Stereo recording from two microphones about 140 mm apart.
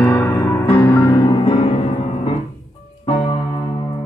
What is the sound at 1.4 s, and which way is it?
Music, 45° left (ahead or behind).